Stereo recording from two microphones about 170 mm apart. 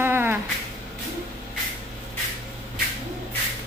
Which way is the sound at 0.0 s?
15° right (ahead or behind).